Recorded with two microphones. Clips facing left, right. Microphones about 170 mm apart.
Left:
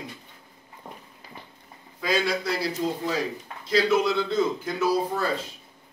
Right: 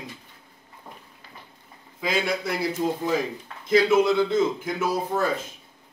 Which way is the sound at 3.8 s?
20° right (ahead or behind).